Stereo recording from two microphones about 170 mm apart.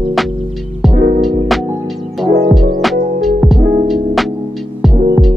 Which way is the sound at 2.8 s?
Centre (ahead or behind).